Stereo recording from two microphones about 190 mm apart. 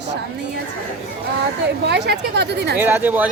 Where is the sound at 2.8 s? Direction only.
10° right (ahead or behind).